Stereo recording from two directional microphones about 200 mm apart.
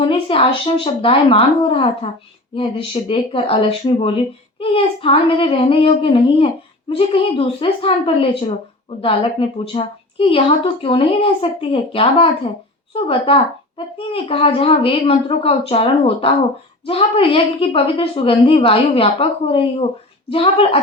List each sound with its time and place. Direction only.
0.0 s a woman's voice: 25° left (ahead or behind)